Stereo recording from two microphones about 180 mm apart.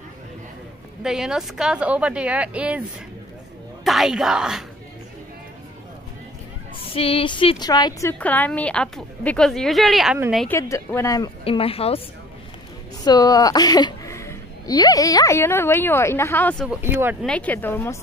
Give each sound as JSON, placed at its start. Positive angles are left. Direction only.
{"t": 1.0, "sound": "speech", "side_deg": -5}
{"t": 3.8, "sound": "a woman's voice", "side_deg": 0}
{"t": 6.9, "sound": "a sound", "side_deg": 30}
{"t": 8.1, "sound": "a woman's voice", "side_deg": 10}
{"t": 10.5, "sound": "a woman's voice", "side_deg": 15}
{"t": 11.4, "sound": "a woman's voice", "side_deg": 30}
{"t": 13.0, "sound": "a woman's voice", "side_deg": 20}
{"t": 16.6, "sound": "speech", "side_deg": -10}
{"t": 17.3, "sound": "a woman's voice", "side_deg": 10}